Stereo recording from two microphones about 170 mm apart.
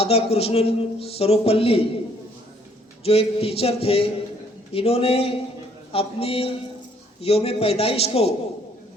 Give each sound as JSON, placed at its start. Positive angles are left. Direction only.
{"t": 0.0, "sound": "a man's voice", "side_deg": 35}
{"t": 3.0, "sound": "a man's voice", "side_deg": 35}